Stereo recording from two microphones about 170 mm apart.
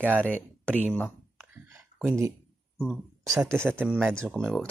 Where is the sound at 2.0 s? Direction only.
15° right (ahead or behind).